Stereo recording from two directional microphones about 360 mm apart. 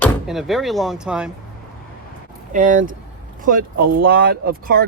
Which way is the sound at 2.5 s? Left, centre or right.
Right.